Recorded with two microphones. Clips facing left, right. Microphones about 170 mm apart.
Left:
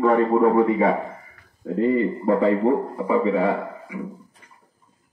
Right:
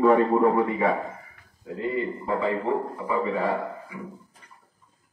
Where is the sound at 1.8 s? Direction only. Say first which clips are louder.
Left 8 dB; 40° left (ahead or behind).